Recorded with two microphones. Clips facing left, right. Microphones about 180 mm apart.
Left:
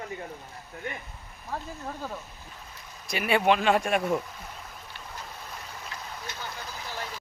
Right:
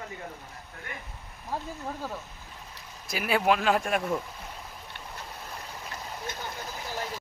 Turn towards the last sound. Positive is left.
turn(degrees=-45)  # may be behind; listen again after turning